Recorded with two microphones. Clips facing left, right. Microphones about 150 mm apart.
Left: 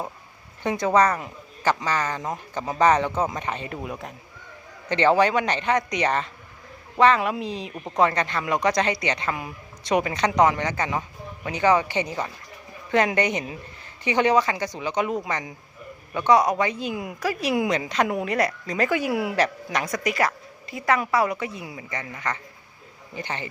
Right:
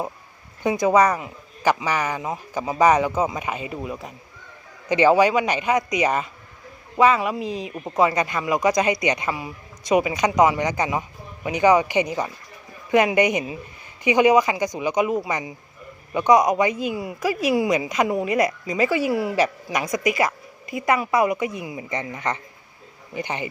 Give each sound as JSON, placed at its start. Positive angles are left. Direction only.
{"t": 0.6, "sound": "speech", "side_deg": -10}
{"t": 19.7, "sound": "speech", "side_deg": -10}